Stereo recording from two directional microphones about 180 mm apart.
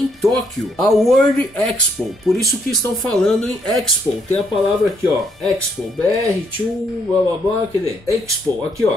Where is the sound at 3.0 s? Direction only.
Centre (ahead or behind).